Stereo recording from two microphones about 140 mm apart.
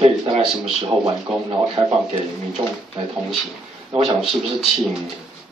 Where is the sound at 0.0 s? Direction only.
45° right (ahead or behind).